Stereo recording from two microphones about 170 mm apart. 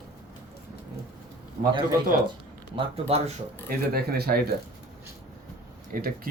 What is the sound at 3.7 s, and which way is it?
Speech, 60° right (ahead or behind).